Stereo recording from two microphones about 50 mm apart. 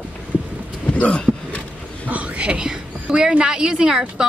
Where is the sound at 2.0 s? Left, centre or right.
Right.